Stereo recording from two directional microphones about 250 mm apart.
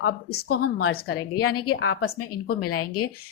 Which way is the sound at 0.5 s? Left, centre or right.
Left.